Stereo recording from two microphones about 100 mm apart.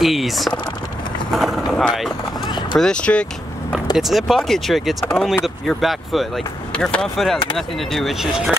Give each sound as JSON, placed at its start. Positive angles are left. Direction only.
{"t": 0.0, "sound": "speech", "side_deg": 0}
{"t": 1.3, "sound": "vehicle", "side_deg": 0}
{"t": 1.7, "sound": "speech", "side_deg": 0}
{"t": 2.4, "sound": "speech", "side_deg": 50}
{"t": 2.8, "sound": "speech", "side_deg": 10}
{"t": 3.9, "sound": "speech", "side_deg": 0}